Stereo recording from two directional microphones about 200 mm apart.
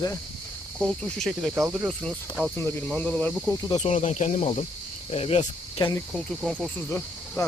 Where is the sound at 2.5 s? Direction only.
10° left (ahead or behind).